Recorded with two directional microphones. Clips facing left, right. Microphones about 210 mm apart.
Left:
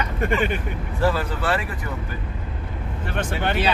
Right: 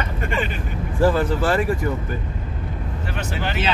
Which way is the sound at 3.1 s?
55° left (ahead or behind).